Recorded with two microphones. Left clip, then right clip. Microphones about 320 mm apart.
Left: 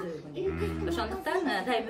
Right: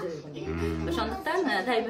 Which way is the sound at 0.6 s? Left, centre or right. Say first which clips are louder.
Right 2 dB; centre.